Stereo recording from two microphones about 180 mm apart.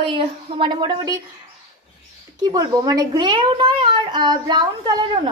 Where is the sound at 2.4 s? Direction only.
20° right (ahead or behind).